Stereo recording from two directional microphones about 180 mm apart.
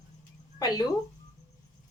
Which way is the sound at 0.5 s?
20° left (ahead or behind).